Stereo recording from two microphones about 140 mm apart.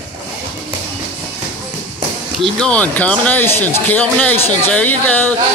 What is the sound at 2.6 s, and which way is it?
Speech, 10° left (ahead or behind).